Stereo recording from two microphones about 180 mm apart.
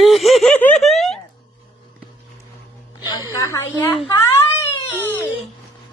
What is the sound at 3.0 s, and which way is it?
A woman's voice, 25° left (ahead or behind).